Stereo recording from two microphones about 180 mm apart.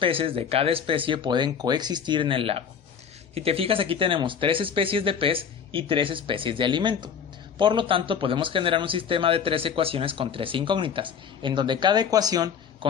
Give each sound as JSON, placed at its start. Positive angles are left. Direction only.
{"t": 0.0, "sound": "speech", "side_deg": -30}